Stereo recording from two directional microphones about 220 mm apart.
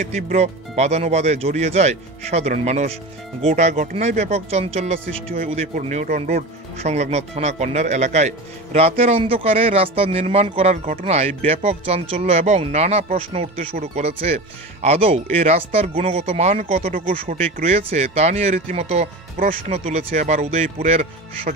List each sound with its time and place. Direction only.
0.0 s speech: 30° right (ahead or behind)